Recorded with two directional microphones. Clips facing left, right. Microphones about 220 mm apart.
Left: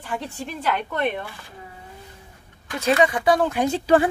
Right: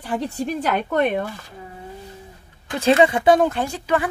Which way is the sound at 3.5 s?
20° left (ahead or behind).